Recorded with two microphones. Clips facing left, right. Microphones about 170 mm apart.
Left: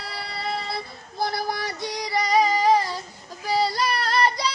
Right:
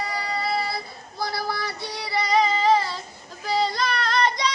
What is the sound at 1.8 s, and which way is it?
Female singing, 15° left (ahead or behind).